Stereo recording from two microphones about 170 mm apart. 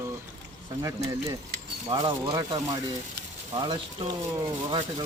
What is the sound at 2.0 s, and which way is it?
Speech, 25° right (ahead or behind).